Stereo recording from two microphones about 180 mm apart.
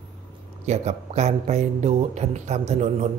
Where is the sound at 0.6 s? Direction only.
40° right (ahead or behind).